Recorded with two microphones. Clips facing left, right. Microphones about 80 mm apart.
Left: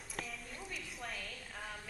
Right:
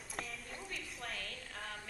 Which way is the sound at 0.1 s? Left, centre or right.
Centre.